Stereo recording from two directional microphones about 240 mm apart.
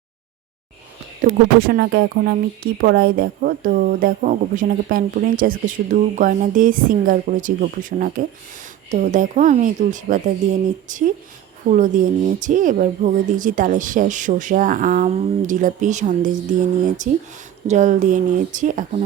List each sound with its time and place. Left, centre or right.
1.2 s speech: right